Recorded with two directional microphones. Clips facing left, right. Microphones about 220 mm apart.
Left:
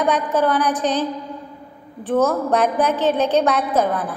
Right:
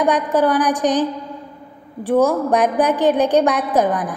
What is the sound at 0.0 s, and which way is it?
A woman's voice, 15° right (ahead or behind).